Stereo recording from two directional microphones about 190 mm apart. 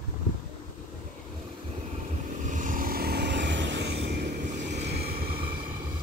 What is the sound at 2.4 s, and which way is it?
Vehicle, 45° right (ahead or behind).